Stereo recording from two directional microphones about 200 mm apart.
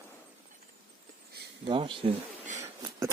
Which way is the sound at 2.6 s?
15° right (ahead or behind).